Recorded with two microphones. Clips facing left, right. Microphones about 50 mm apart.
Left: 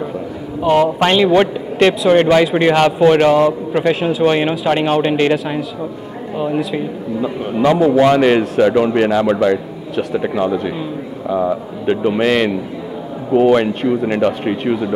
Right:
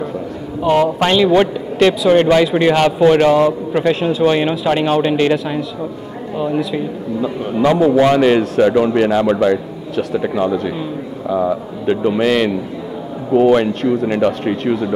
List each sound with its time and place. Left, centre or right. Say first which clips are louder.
0.6 s a man's voice: left 1 dB; centre
3.7 s a man's voice: even; centre
9.2 s a man's voice: even; centre